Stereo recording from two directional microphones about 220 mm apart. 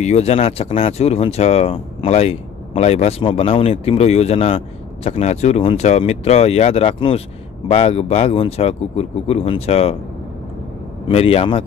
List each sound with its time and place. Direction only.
0.0 s speech: 30° left (ahead or behind)
11.1 s speech: 25° left (ahead or behind)